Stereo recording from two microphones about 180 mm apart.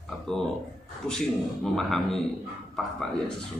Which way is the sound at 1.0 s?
Centre (ahead or behind).